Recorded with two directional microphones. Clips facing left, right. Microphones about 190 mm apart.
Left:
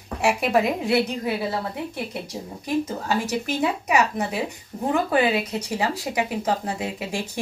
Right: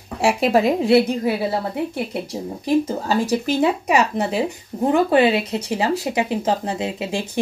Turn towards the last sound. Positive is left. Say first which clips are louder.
# right 4 dB
turn(degrees=-25)  # may be behind; listen again after turning